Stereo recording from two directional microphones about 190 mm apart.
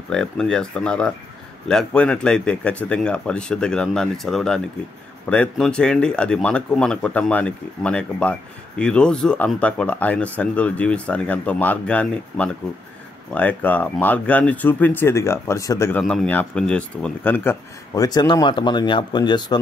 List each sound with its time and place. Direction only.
0.1 s speech: 5° left (ahead or behind)
16.0 s speech: centre (ahead or behind); by 19.6 s 25° left (ahead or behind)